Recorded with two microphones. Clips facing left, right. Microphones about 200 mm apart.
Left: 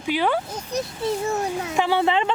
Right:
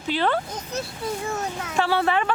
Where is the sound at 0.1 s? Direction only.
10° left (ahead or behind).